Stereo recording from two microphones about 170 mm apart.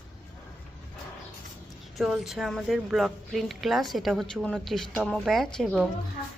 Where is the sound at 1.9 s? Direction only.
Centre (ahead or behind).